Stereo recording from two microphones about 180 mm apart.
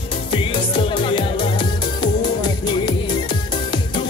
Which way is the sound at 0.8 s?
30° left (ahead or behind).